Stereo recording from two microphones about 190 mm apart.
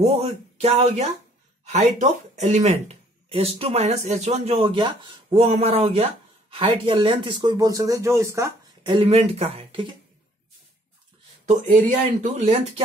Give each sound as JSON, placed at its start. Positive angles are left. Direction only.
{"t": 0.0, "sound": "speech", "side_deg": -35}
{"t": 8.8, "sound": "speech", "side_deg": -30}
{"t": 11.4, "sound": "speech", "side_deg": -40}